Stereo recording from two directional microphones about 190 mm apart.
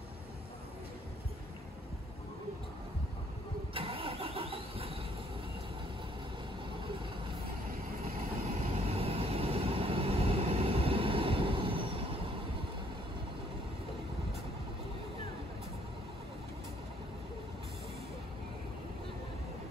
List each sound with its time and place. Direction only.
3.7 s vehicle: 30° right (ahead or behind)
7.7 s vehicle: 50° right (ahead or behind)
8.5 s vehicle: 30° right (ahead or behind)